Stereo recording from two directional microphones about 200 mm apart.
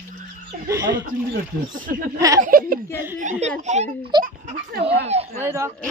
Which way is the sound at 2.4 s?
45° right (ahead or behind).